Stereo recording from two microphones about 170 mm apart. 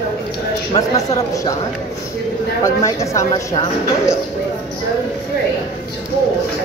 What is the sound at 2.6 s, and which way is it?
Speech, 15° left (ahead or behind).